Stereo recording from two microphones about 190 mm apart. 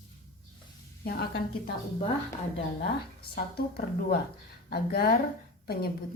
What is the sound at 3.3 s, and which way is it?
A woman's voice, 55° left (ahead or behind).